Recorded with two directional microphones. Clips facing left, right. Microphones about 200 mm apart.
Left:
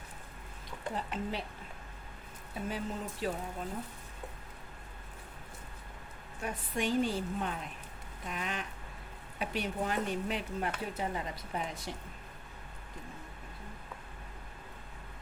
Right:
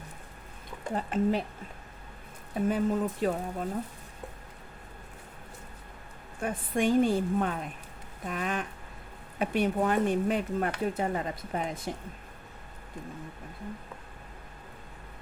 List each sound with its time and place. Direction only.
0.9 s speech: 45° right (ahead or behind)
2.6 s speech: 50° right (ahead or behind)
6.4 s speech: 50° right (ahead or behind)